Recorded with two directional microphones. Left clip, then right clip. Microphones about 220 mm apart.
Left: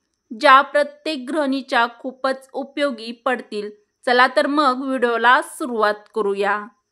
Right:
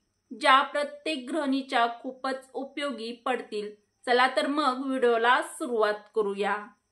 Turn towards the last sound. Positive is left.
turn(degrees=55)  # may be behind; listen again after turning